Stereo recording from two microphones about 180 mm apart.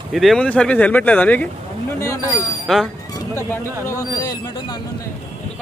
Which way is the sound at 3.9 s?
20° left (ahead or behind).